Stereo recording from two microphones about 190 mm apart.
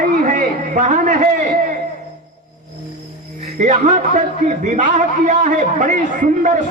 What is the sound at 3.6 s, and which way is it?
A man's voice, 40° right (ahead or behind).